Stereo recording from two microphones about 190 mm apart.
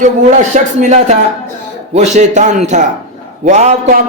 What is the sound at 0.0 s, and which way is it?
Speech, 40° right (ahead or behind).